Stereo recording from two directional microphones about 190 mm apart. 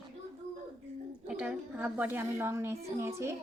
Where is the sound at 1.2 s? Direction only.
5° right (ahead or behind).